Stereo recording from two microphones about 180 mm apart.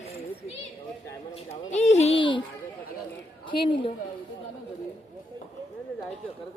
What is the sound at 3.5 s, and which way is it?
Speech, 25° left (ahead or behind).